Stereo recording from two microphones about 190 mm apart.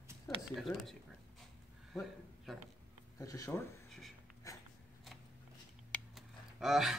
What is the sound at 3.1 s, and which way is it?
Speech, 15° left (ahead or behind).